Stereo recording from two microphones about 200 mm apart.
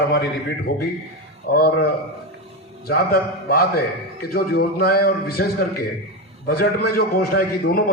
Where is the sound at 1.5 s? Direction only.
50° left (ahead or behind).